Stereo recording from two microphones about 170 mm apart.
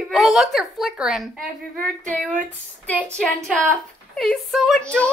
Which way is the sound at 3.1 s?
Centre (ahead or behind).